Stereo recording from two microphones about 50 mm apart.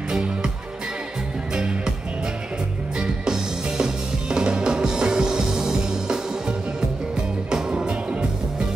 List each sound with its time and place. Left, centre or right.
0.1 s music: centre
1.5 s music: centre
3.0 s music: centre
7.7 s music: centre